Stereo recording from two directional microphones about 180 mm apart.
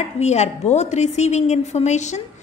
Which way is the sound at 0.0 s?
40° left (ahead or behind).